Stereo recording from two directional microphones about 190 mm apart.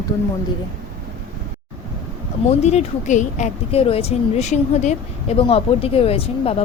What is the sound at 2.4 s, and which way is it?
A woman's voice, 35° left (ahead or behind).